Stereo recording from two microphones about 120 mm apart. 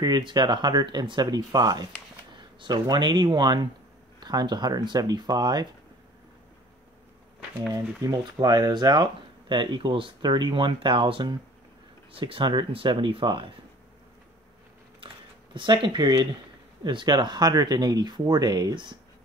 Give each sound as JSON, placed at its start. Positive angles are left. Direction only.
{"t": 0.0, "sound": "speech", "side_deg": -35}
{"t": 8.0, "sound": "speech", "side_deg": -30}
{"t": 15.5, "sound": "speech", "side_deg": -40}